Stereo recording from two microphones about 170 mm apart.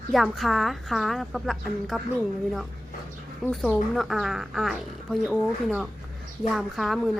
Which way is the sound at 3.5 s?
Centre (ahead or behind).